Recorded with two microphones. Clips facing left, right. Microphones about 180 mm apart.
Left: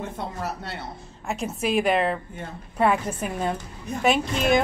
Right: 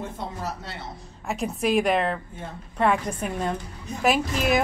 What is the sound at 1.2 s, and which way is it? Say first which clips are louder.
A woman's voice: right 1 dB; centre (ahead or behind).